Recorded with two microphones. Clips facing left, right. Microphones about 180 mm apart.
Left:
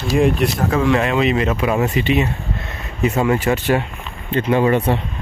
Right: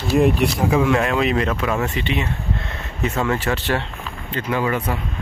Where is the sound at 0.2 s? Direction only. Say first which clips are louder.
Left 2 dB; 10° right (ahead or behind); by 3.5 s 15° left (ahead or behind).